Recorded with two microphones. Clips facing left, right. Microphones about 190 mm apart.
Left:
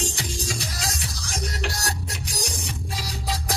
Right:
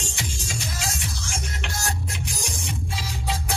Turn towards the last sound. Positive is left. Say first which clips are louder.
# even
turn(degrees=35)  # may be behind; listen again after turning